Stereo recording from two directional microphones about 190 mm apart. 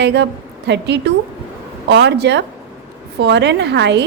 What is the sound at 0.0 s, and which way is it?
Speech, 65° right (ahead or behind).